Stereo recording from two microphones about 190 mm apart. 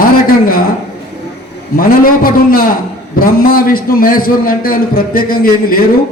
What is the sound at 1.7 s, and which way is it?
A man's voice, 50° left (ahead or behind).